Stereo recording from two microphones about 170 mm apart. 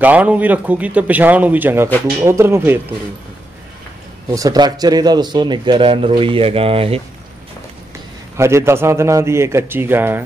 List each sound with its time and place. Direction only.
0.0 s a man's voice: 10° right (ahead or behind)
4.3 s speech: 20° right (ahead or behind)
8.4 s a man's voice: 15° right (ahead or behind)